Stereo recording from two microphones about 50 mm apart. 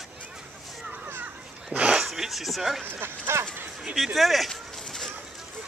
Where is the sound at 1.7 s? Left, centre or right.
Right.